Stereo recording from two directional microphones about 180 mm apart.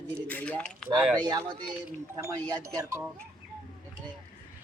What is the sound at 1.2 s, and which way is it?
Speech, 25° right (ahead or behind).